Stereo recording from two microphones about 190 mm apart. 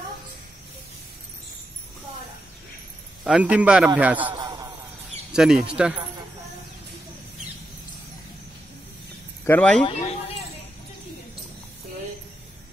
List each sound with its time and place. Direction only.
3.3 s a man's voice: 5° right (ahead or behind)
4.3 s a sound: 20° right (ahead or behind)
5.3 s speech: 5° right (ahead or behind)
9.4 s speech: 10° left (ahead or behind)
9.8 s speech: 30° left (ahead or behind)